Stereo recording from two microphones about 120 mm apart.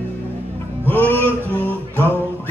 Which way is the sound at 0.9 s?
15° left (ahead or behind).